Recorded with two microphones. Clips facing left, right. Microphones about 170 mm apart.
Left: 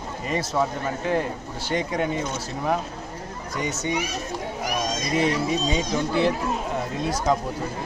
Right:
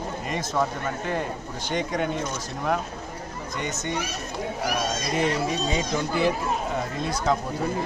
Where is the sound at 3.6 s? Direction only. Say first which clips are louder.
Left 3 dB; 10° left (ahead or behind).